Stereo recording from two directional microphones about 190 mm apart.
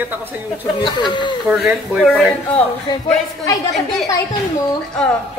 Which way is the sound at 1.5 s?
5° right (ahead or behind).